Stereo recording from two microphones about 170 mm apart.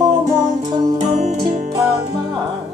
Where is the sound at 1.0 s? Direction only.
45° right (ahead or behind).